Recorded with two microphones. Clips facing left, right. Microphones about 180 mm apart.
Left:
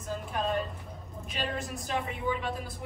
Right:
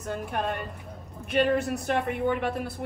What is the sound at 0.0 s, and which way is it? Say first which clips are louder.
Speech: right 3 dB; 65° right (ahead or behind).